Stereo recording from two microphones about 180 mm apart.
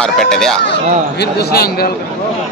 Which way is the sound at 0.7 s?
65° left (ahead or behind).